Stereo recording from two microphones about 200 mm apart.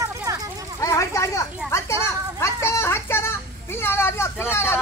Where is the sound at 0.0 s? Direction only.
15° right (ahead or behind).